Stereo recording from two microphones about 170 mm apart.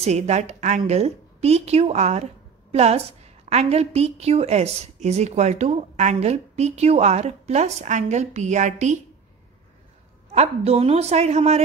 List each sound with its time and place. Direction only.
0.0 s a woman's voice: 40° right (ahead or behind)
10.3 s a woman's voice: 40° right (ahead or behind)